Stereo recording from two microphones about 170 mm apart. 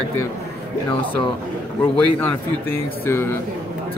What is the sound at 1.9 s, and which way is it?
Speech, 10° left (ahead or behind).